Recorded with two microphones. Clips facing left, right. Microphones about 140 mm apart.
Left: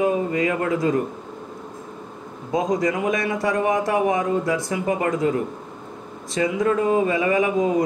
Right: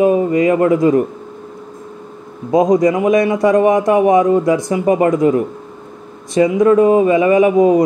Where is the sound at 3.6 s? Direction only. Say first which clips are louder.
Right 9 dB; 20° right (ahead or behind).